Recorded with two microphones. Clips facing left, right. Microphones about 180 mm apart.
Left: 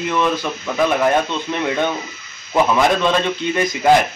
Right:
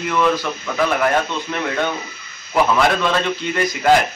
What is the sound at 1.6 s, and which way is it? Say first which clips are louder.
Speech: left 3 dB; 15° left (ahead or behind).